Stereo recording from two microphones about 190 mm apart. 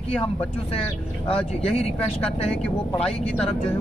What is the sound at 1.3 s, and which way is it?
Speech, 30° left (ahead or behind).